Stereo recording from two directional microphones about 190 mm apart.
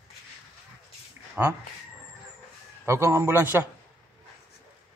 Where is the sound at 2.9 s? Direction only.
15° right (ahead or behind).